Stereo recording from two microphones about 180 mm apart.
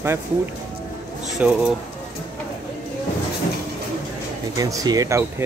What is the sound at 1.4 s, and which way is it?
Speech, 5° right (ahead or behind).